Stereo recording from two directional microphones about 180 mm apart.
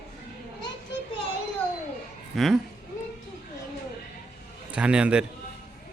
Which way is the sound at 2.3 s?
Centre (ahead or behind).